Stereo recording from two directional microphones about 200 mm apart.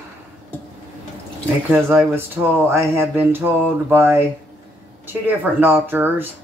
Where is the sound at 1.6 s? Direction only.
10° right (ahead or behind).